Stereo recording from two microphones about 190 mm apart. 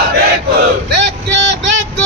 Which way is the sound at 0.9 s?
65° right (ahead or behind).